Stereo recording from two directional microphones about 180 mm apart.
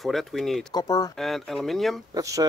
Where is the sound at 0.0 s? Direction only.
Centre (ahead or behind).